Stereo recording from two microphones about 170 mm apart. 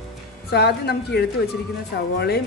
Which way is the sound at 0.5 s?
70° left (ahead or behind).